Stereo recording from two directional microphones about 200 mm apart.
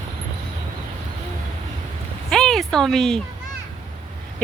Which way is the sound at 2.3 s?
Centre (ahead or behind).